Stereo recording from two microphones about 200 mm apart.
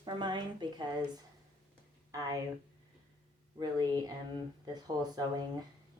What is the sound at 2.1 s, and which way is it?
Speech, 15° right (ahead or behind).